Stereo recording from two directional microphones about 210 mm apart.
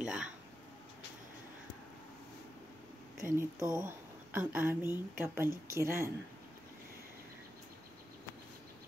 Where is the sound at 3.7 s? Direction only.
10° right (ahead or behind).